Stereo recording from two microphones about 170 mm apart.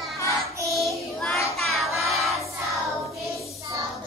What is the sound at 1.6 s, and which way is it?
Music, centre (ahead or behind).